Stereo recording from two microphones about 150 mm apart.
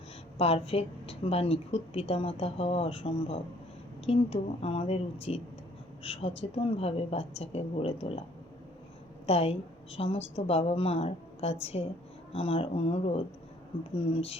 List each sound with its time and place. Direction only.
0.3 s a woman's voice: 40° left (ahead or behind)
9.2 s a woman's voice: 45° left (ahead or behind)